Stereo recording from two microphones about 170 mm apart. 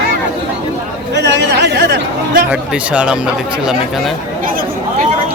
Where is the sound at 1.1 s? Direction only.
85° right.